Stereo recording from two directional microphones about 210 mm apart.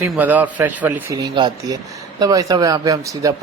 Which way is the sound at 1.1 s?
20° right (ahead or behind).